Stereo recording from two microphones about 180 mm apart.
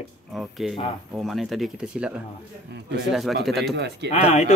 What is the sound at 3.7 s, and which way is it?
Speech, 70° right (ahead or behind).